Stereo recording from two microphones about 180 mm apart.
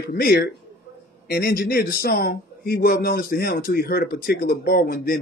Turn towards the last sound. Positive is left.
turn(degrees=55)  # may be behind; listen again after turning